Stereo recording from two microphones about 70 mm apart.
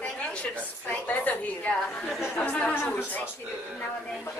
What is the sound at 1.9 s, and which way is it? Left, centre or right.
Speech, centre.